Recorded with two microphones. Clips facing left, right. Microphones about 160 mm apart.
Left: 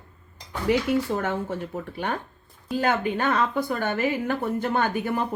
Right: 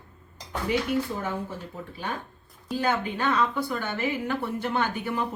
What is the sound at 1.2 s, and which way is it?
Speech, 70° left (ahead or behind).